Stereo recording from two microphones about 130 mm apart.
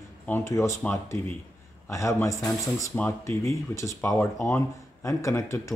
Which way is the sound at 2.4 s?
Centre (ahead or behind).